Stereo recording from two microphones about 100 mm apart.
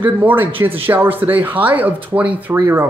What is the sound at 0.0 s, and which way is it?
Speech, 20° right (ahead or behind).